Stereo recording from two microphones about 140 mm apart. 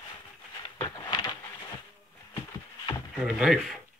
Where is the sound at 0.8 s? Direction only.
30° left (ahead or behind).